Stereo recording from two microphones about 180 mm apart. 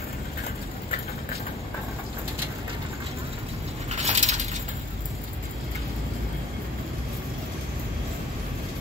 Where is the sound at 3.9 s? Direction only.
40° right (ahead or behind).